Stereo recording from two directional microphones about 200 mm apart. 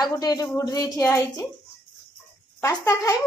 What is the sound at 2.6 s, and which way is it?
Speech, 15° left (ahead or behind).